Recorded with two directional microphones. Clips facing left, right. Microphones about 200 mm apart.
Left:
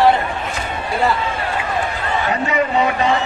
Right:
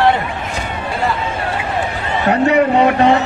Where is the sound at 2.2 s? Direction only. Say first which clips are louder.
Right 9 dB; 65° right (ahead or behind).